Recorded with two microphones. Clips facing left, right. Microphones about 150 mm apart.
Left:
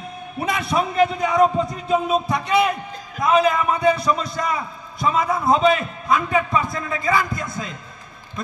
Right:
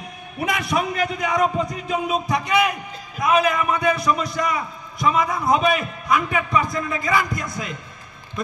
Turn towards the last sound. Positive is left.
turn(degrees=25)  # may be behind; listen again after turning